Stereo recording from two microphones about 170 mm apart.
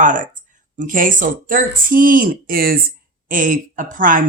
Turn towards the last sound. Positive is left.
turn(degrees=-50)  # may be behind; listen again after turning